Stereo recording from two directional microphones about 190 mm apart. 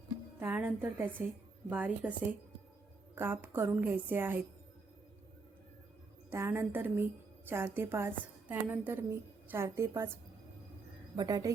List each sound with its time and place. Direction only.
0.3 s a woman's voice: 10° right (ahead or behind)
3.2 s a woman's voice: 10° right (ahead or behind)
6.3 s a woman's voice: 10° right (ahead or behind)
11.2 s a woman's voice: 20° right (ahead or behind)